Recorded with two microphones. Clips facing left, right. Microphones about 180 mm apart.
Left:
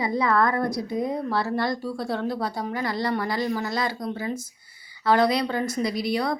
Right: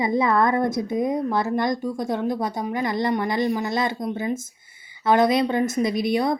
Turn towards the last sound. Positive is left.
turn(degrees=-20)  # may be behind; listen again after turning